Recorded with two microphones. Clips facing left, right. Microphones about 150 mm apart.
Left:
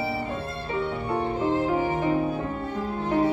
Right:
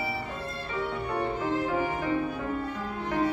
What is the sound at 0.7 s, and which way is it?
Violin, 25° left (ahead or behind).